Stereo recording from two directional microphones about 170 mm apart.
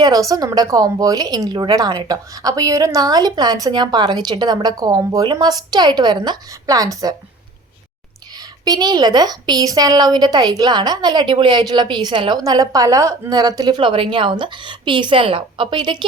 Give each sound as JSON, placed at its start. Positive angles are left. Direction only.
{"t": 0.0, "sound": "a woman's voice", "side_deg": -20}
{"t": 8.4, "sound": "a woman's voice", "side_deg": -25}